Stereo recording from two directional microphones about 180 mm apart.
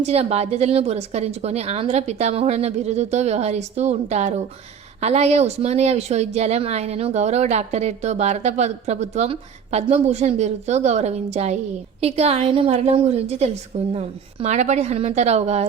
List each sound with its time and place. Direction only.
0.0 s speech: 35° right (ahead or behind)